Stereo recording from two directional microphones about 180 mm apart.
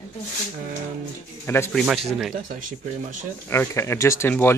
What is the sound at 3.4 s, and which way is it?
Speech, 15° left (ahead or behind).